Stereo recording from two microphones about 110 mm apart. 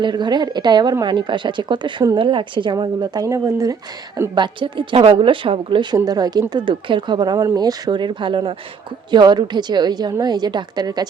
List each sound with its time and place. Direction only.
0.0 s a woman's voice: 40° right (ahead or behind)
4.4 s a woman's voice: 50° right (ahead or behind)
6.1 s a woman's voice: 35° right (ahead or behind)